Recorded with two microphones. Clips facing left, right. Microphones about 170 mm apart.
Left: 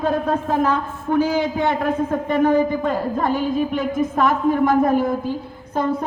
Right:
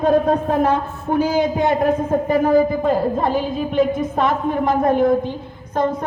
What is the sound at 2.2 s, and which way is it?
A woman's voice, 35° right (ahead or behind).